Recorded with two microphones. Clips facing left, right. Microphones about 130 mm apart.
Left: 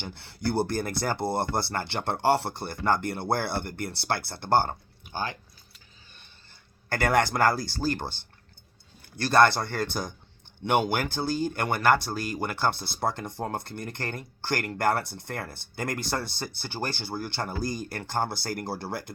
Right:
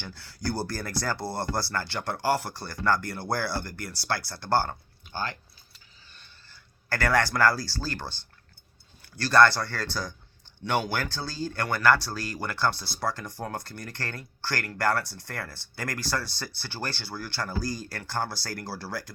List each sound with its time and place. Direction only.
0.0 s speech: 25° left (ahead or behind)